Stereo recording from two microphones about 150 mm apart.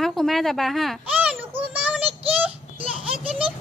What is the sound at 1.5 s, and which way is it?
Child singing, 10° right (ahead or behind).